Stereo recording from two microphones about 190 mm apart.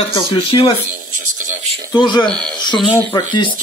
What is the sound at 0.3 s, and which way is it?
Speech, 30° left (ahead or behind).